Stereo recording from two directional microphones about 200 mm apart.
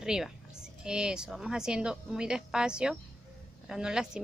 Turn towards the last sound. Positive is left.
turn(degrees=-5)  # may be behind; listen again after turning